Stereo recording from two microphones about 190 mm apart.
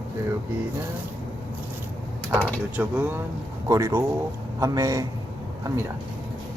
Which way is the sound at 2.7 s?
10° right (ahead or behind).